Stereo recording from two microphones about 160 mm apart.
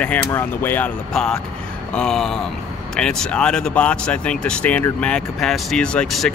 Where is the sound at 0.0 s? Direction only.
10° left (ahead or behind).